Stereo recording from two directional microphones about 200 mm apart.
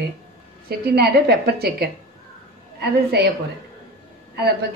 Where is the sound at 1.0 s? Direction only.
50° right (ahead or behind).